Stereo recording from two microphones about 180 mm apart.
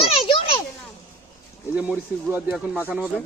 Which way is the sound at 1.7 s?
10° right (ahead or behind).